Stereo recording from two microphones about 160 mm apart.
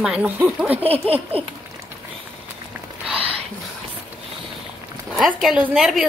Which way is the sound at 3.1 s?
35° right (ahead or behind).